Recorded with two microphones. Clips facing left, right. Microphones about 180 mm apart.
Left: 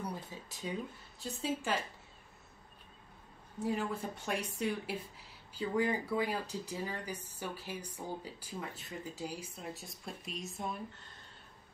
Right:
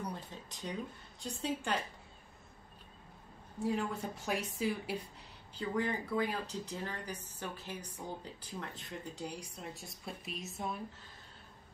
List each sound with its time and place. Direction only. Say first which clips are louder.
0.0 s a sound: left 1 dB; 5° left (ahead or behind)
1.2 s a woman's voice: left 1 dB; 5° left (ahead or behind)
3.5 s a woman's voice: even; centre (ahead or behind)